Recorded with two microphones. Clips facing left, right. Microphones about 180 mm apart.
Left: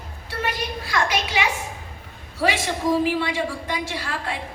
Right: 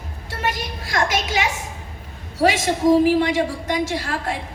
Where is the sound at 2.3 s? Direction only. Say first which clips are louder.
Right 5 dB; 45° right (ahead or behind).